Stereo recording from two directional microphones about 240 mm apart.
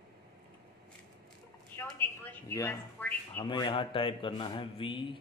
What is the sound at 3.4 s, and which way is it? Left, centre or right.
A man's voice, left.